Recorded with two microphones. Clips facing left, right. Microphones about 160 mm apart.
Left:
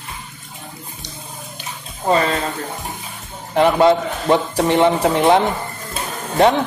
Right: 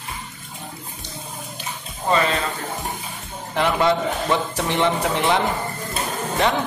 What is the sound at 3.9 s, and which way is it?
A man's voice, 30° left (ahead or behind).